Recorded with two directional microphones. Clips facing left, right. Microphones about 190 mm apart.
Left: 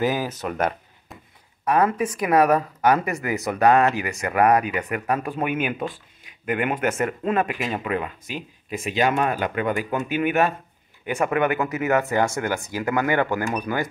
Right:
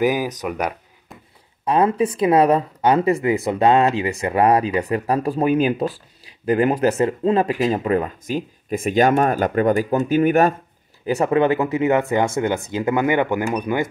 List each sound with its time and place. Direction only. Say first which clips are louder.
0.0 s speech: right 4 dB; 15° right (ahead or behind)
1.6 s speech: right 3 dB; 25° right (ahead or behind)